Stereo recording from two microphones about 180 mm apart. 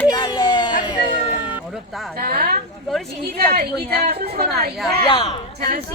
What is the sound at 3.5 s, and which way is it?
A woman's voice, 60° right (ahead or behind).